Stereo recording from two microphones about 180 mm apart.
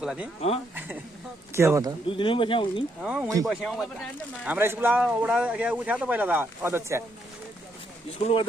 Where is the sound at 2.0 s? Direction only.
30° left (ahead or behind).